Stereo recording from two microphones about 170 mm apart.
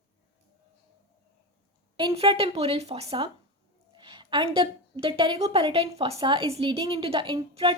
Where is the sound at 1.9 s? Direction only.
30° right (ahead or behind).